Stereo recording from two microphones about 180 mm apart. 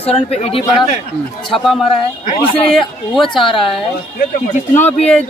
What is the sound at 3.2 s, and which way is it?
Speech, 30° left (ahead or behind).